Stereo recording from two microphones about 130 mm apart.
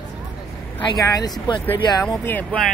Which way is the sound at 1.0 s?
30° left (ahead or behind).